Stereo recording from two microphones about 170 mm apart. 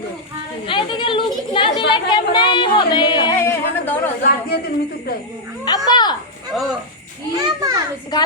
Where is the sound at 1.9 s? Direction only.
25° left (ahead or behind).